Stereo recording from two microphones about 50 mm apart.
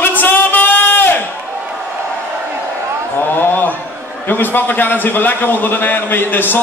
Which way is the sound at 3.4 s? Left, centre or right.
Left.